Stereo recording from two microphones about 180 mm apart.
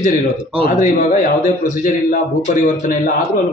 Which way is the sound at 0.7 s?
45° left (ahead or behind).